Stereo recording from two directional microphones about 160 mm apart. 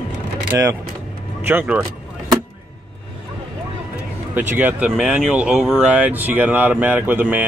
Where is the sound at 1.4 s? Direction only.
10° right (ahead or behind).